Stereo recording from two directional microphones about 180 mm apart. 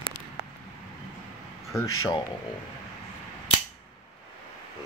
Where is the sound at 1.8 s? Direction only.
25° left (ahead or behind).